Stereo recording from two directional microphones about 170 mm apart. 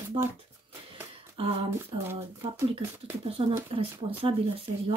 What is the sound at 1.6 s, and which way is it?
Speech, 15° right (ahead or behind).